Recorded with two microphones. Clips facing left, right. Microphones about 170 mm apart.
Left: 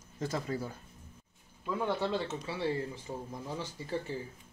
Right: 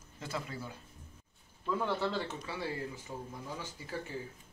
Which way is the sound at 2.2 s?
30° left (ahead or behind).